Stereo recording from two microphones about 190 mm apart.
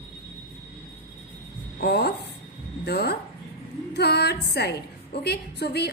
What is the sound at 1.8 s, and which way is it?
A woman's voice, 60° left (ahead or behind).